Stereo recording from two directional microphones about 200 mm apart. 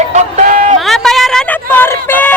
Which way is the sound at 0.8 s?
Centre (ahead or behind).